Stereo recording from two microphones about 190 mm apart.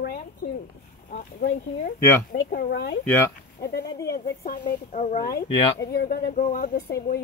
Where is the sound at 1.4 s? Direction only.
55° left (ahead or behind).